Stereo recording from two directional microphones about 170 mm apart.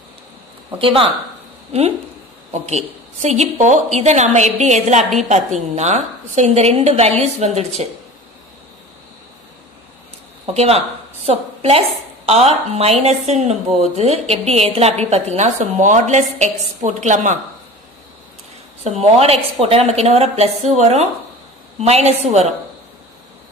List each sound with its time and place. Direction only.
0.7 s a woman's voice: 30° right (ahead or behind)
10.4 s a woman's voice: 35° right (ahead or behind)
18.9 s a woman's voice: 40° right (ahead or behind)